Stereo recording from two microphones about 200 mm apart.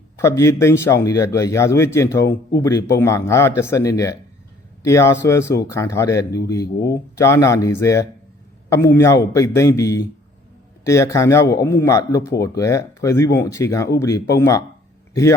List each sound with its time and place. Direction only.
0.2 s a man's voice: 15° left (ahead or behind)